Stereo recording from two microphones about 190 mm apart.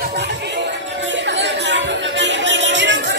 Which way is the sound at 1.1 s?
70° right (ahead or behind).